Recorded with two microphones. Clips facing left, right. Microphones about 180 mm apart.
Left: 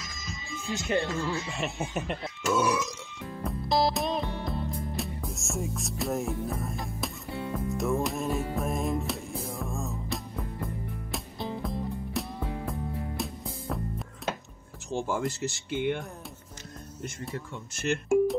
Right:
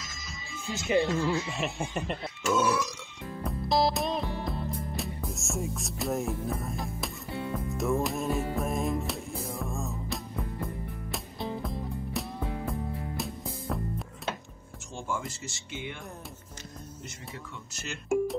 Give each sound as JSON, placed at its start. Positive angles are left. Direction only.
{"t": 0.7, "sound": "speech", "side_deg": -5}
{"t": 2.5, "sound": "speech", "side_deg": 15}
{"t": 3.4, "sound": "music", "side_deg": 0}
{"t": 14.9, "sound": "music", "side_deg": 70}
{"t": 15.7, "sound": "speech", "side_deg": 60}